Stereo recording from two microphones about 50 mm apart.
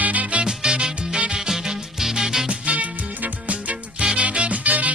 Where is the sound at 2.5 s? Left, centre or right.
Right.